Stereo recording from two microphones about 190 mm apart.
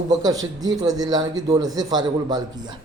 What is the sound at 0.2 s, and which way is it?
A man's voice, 20° right (ahead or behind).